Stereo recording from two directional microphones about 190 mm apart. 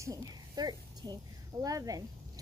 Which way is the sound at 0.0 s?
20° right (ahead or behind).